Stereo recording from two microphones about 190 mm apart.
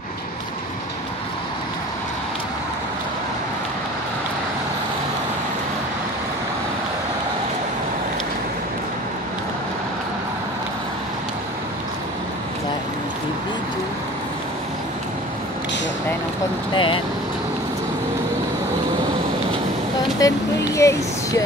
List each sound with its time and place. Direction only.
16.7 s vehicle: 25° left (ahead or behind)
20.2 s vehicle: 15° left (ahead or behind)